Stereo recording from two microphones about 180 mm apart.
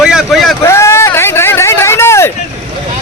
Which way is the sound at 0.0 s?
Centre (ahead or behind).